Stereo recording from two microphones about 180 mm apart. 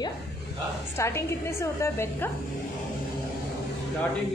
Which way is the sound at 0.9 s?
15° left (ahead or behind).